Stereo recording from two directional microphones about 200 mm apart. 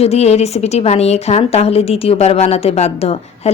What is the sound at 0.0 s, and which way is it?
A woman's voice, 30° left (ahead or behind).